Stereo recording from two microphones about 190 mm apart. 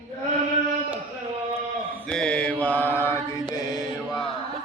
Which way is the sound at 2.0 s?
5° left (ahead or behind).